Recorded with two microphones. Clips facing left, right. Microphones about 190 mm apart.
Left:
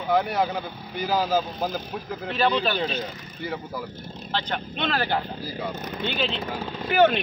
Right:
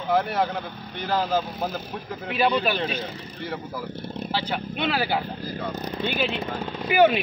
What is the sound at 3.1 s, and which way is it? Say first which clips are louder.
Speech: right 3 dB; 30° right (ahead or behind).